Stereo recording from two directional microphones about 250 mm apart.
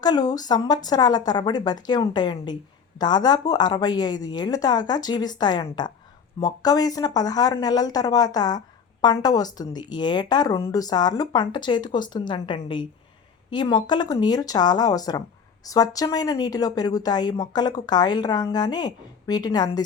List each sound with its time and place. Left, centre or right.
0.0 s speech: centre